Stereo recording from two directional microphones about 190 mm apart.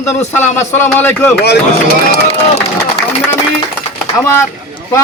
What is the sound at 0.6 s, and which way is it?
Speech, 10° left (ahead or behind).